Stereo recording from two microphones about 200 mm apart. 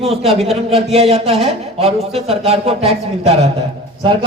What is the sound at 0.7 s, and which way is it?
A man's voice, 30° right (ahead or behind).